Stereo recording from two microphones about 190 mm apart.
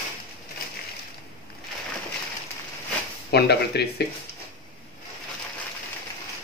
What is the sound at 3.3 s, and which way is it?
Speech, 60° left (ahead or behind).